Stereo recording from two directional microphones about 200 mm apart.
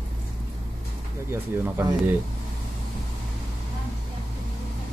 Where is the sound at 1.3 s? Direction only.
10° right (ahead or behind).